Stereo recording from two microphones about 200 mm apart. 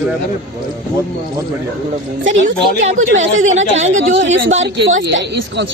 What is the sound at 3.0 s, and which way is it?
Speech, 80° right.